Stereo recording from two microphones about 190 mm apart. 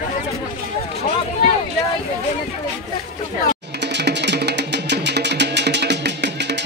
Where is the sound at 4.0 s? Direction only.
65° right (ahead or behind).